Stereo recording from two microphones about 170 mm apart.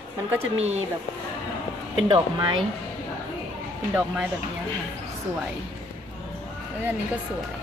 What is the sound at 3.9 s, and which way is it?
Speech, 5° right (ahead or behind).